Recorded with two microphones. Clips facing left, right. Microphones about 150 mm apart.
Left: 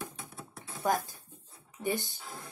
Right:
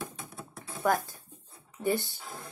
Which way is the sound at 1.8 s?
20° left (ahead or behind).